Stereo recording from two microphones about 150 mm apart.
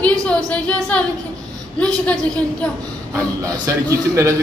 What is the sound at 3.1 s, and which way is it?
A man's voice, 20° right (ahead or behind).